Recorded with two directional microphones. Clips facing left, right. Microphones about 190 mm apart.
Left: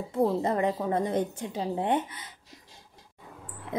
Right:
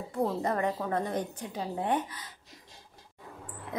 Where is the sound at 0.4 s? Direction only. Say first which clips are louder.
Left 3 dB; 20° left (ahead or behind).